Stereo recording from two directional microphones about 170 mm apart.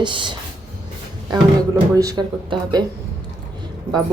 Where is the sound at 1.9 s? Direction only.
25° right (ahead or behind).